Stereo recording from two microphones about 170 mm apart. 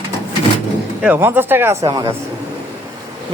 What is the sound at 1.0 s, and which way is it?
Speech, 10° right (ahead or behind).